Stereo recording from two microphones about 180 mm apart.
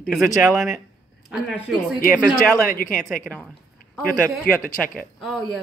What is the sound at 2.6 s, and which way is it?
Speech, 50° left (ahead or behind).